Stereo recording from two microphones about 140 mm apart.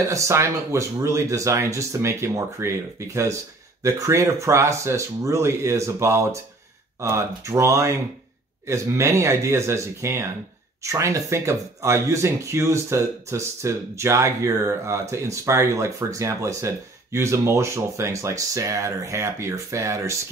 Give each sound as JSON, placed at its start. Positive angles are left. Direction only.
{"t": 0.1, "sound": "speech", "side_deg": -20}